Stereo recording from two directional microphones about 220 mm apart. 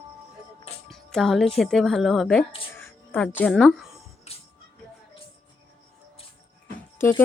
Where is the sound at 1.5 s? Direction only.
Centre (ahead or behind).